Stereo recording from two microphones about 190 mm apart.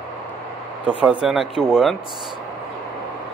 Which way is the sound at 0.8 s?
5° right (ahead or behind).